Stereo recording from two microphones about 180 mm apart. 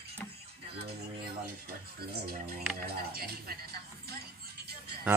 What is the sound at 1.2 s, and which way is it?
Speech, 60° right (ahead or behind).